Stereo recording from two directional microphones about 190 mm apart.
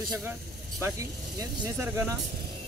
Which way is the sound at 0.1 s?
10° right (ahead or behind).